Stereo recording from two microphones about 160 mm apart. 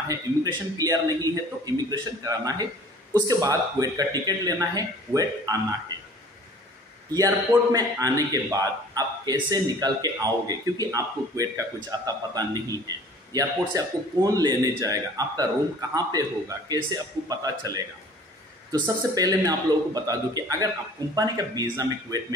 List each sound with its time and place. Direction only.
0.1 s a man's voice: 20° right (ahead or behind)
7.2 s a man's voice: 20° right (ahead or behind)